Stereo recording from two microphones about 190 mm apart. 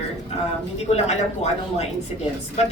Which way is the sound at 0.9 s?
35° left (ahead or behind).